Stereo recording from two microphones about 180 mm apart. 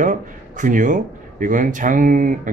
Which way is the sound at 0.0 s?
45° right (ahead or behind).